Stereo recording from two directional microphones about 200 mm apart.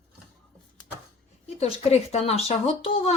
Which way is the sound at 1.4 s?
30° left (ahead or behind).